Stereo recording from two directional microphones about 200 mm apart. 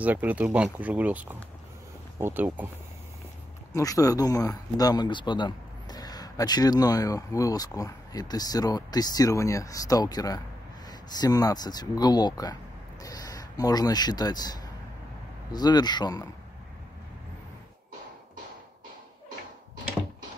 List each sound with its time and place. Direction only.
0.0 s speech: 10° right (ahead or behind)
3.7 s speech: 15° left (ahead or behind)